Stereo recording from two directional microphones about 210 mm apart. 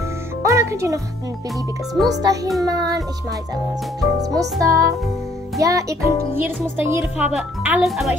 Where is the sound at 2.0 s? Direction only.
15° right (ahead or behind).